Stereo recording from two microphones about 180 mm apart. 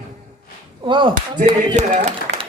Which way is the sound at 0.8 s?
25° right (ahead or behind).